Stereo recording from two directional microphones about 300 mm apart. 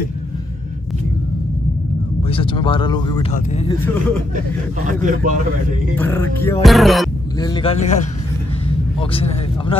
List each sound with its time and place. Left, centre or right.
2.2 s speech: centre
4.8 s speech: right
5.9 s speech: centre
7.3 s a man's voice: centre